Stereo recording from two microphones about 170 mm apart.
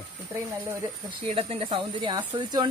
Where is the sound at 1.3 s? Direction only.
35° right (ahead or behind).